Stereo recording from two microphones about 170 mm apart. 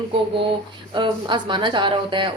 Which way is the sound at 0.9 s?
30° right (ahead or behind).